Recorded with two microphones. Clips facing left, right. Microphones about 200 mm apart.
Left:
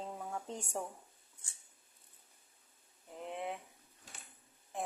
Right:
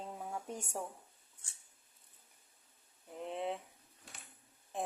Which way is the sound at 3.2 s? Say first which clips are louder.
Right 2 dB; 20° right (ahead or behind).